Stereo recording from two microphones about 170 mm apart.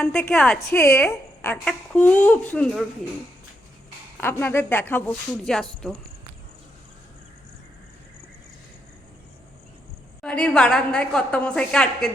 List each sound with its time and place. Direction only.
0.0 s a woman's voice: 5° left (ahead or behind)
0.7 s a woman's voice: 15° left (ahead or behind)
4.2 s a woman's voice: 15° left (ahead or behind)
10.2 s a woman's voice: 5° left (ahead or behind)